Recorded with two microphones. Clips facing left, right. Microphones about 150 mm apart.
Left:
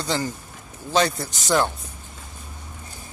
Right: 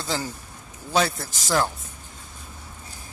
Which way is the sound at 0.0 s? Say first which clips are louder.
Left 3 dB; 5° right (ahead or behind).